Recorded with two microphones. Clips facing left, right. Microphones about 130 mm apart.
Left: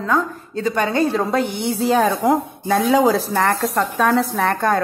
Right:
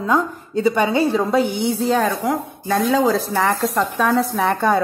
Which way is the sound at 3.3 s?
5° right (ahead or behind).